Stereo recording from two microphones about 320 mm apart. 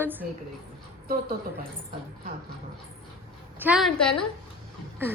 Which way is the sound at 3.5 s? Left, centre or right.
Centre.